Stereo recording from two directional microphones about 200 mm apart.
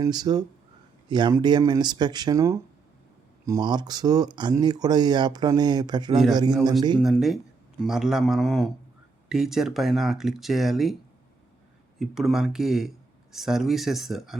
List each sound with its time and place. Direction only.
0.0 s speech: 20° right (ahead or behind)
7.0 s speech: centre (ahead or behind)
11.9 s speech: centre (ahead or behind)